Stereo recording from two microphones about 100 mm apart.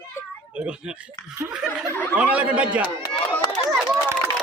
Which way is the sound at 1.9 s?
15° left (ahead or behind).